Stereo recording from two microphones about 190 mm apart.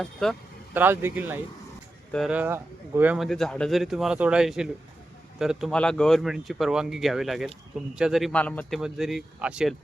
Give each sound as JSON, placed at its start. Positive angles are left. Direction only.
{"t": 0.0, "sound": "speech", "side_deg": 0}
{"t": 0.7, "sound": "speech", "side_deg": -10}